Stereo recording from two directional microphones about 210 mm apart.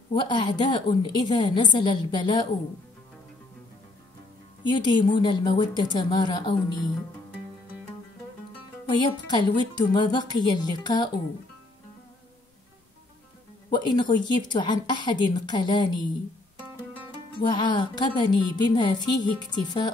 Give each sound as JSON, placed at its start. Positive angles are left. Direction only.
{"t": 0.1, "sound": "speech", "side_deg": 20}
{"t": 4.6, "sound": "speech", "side_deg": 20}
{"t": 9.0, "sound": "speech", "side_deg": 20}
{"t": 13.7, "sound": "speech", "side_deg": 20}
{"t": 17.4, "sound": "speech", "side_deg": 20}